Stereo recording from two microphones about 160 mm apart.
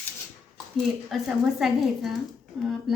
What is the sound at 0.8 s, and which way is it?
A woman's voice, centre (ahead or behind).